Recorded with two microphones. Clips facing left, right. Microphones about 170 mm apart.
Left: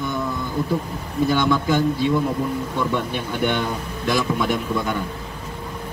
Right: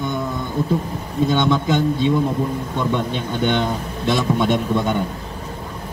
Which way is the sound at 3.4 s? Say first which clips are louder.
Right 3 dB; 25° right (ahead or behind).